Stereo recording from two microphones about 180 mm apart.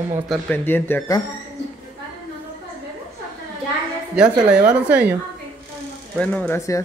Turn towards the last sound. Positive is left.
turn(degrees=15)  # may be behind; listen again after turning